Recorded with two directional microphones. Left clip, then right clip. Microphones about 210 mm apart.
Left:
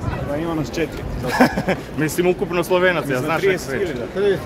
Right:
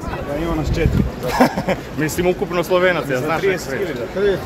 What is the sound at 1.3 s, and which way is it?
Speech, 15° left (ahead or behind).